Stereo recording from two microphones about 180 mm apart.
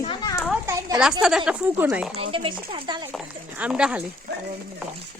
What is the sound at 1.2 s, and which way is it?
Speech, 5° right (ahead or behind).